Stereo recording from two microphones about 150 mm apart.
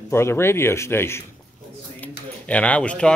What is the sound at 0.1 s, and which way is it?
Speech, 15° left (ahead or behind).